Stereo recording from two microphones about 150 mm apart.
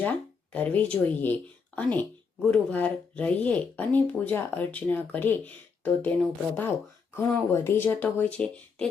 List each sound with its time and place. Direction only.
0.0 s speech: 10° left (ahead or behind)